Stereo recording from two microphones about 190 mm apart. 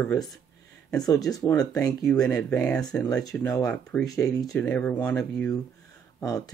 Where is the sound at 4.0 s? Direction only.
20° left (ahead or behind).